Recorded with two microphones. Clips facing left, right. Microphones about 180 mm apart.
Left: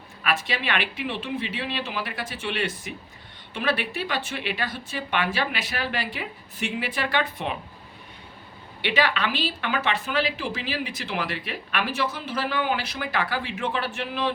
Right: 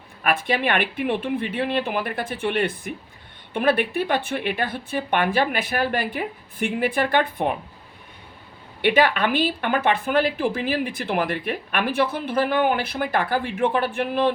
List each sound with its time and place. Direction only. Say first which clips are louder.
0.2 s a woman's voice: right 5 dB; 50° right (ahead or behind)
8.8 s a woman's voice: right 6 dB; 50° right (ahead or behind)